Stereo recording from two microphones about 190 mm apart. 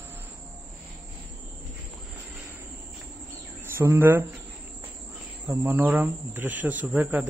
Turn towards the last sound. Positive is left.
turn(degrees=-10)  # may be behind; listen again after turning